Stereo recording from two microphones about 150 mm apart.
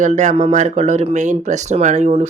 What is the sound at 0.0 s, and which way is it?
Speech, 55° right (ahead or behind).